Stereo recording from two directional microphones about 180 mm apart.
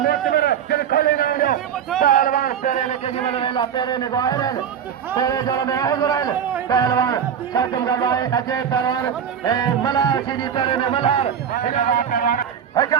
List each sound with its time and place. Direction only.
0.3 s a sound: 60° left (ahead or behind)
2.0 s a man's voice: 50° left (ahead or behind); by 11.3 s 30° left (ahead or behind)
11.9 s speech: 55° left (ahead or behind)
12.7 s a man's voice: 20° left (ahead or behind)